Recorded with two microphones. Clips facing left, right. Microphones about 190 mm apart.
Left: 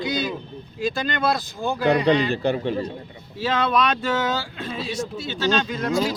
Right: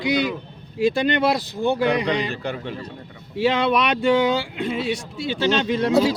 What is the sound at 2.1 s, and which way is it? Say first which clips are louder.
Speech: left 5 dB; 30° left (ahead or behind).